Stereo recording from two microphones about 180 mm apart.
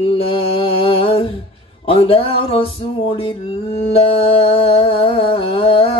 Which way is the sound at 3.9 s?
30° left (ahead or behind).